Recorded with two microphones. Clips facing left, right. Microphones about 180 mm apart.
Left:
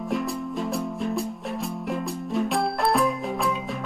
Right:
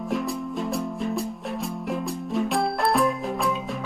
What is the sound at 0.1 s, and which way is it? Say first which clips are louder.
Music: even; centre (ahead or behind).